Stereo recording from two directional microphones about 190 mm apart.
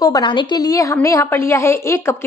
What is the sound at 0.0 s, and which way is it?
A woman's voice, 20° left (ahead or behind).